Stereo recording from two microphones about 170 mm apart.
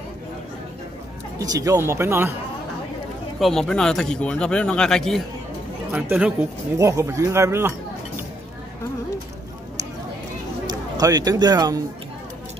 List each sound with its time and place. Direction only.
1.4 s speech: 20° right (ahead or behind)
3.3 s speech: centre (ahead or behind)
5.9 s speech: 10° right (ahead or behind)
6.8 s speech: 20° right (ahead or behind)
10.7 s speech: 20° right (ahead or behind)